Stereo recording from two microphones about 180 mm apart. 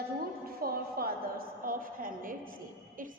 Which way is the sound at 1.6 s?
50° right (ahead or behind).